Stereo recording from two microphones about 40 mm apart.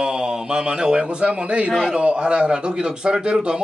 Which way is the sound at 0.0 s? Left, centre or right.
Centre.